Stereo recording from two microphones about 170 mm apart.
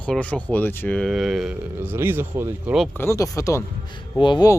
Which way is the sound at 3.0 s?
20° left (ahead or behind).